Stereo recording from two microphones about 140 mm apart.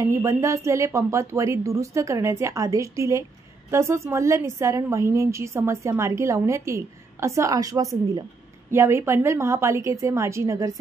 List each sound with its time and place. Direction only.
0.0 s a woman's voice: 20° right (ahead or behind)